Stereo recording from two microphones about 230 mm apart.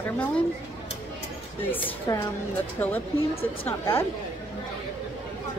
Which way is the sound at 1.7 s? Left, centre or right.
Centre.